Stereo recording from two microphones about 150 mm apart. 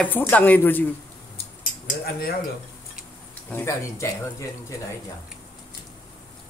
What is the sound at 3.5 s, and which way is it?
Speech, 15° left (ahead or behind).